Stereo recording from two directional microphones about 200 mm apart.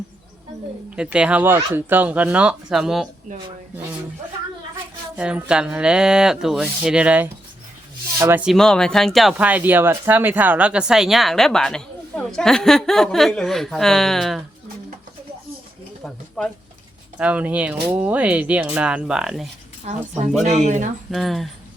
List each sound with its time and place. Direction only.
0.9 s speech: 5° right (ahead or behind)
5.1 s speech: 5° right (ahead or behind)
16.0 s a sound: 5° left (ahead or behind)
17.2 s speech: 5° right (ahead or behind)
19.9 s speech: 35° right (ahead or behind)
21.1 s speech: centre (ahead or behind)